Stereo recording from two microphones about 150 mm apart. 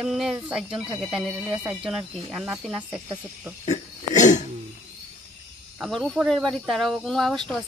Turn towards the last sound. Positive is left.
turn(degrees=0)  # may be behind; listen again after turning